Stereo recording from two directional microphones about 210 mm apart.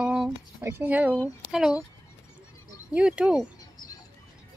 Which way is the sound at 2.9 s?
5° right (ahead or behind).